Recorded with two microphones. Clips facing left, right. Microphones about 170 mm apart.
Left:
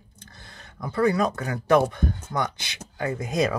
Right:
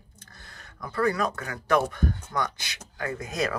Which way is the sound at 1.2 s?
25° left (ahead or behind).